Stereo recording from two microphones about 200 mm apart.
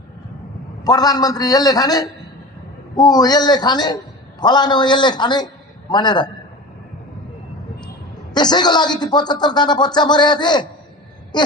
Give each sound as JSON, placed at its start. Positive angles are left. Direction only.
{"t": 0.9, "sound": "a man's voice", "side_deg": 20}
{"t": 8.3, "sound": "a man's voice", "side_deg": 20}
{"t": 11.3, "sound": "throat clearing", "side_deg": 20}